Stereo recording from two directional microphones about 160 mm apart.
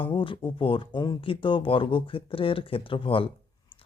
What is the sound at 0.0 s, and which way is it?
Speech, 30° left (ahead or behind).